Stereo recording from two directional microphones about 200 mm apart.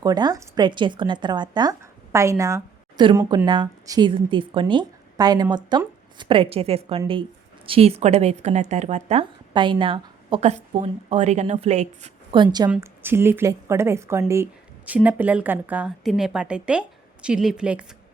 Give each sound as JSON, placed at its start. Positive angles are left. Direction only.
{"t": 0.0, "sound": "a woman's voice", "side_deg": -20}
{"t": 12.3, "sound": "a woman's voice", "side_deg": -20}